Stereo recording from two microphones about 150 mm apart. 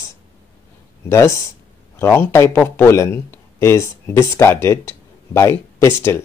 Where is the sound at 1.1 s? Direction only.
20° left (ahead or behind).